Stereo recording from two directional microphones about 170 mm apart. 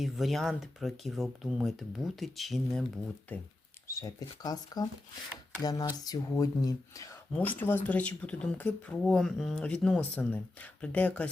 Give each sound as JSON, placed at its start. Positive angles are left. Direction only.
{"t": 0.0, "sound": "speech", "side_deg": 0}
{"t": 3.8, "sound": "speech", "side_deg": 20}